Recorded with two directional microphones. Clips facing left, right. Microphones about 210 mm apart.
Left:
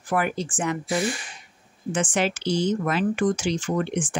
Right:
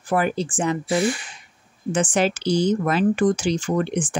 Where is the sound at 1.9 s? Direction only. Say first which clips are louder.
Right 4 dB; 35° right (ahead or behind).